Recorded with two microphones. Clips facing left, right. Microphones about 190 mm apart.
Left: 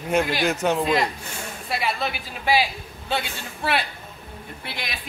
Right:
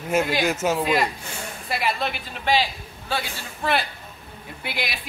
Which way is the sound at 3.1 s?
20° left (ahead or behind).